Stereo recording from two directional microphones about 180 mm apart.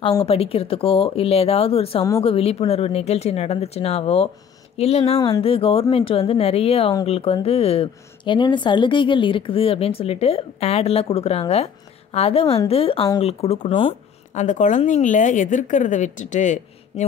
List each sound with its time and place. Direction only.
0.2 s speech: 35° left (ahead or behind)
14.3 s a woman's voice: 45° left (ahead or behind)